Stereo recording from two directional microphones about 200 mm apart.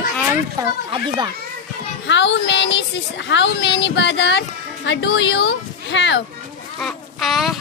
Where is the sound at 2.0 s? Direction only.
65° left (ahead or behind).